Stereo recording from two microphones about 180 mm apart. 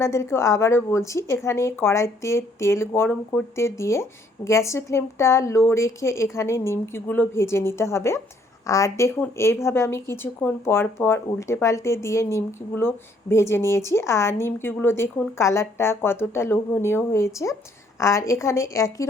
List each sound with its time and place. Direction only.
0.0 s speech: 15° left (ahead or behind)